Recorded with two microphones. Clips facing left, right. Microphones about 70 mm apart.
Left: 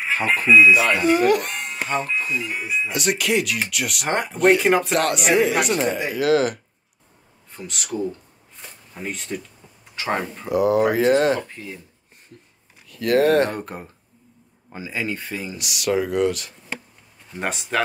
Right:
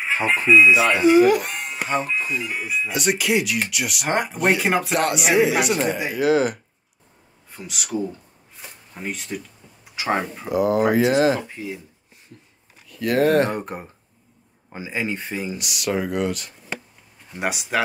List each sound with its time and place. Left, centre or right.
0.5 s speech: centre
0.7 s speech: right
1.0 s speech: centre
8.5 s a sound: centre
9.9 s speech: centre
11.4 s speech: centre
12.9 s speech: centre
13.5 s speech: centre
15.5 s speech: centre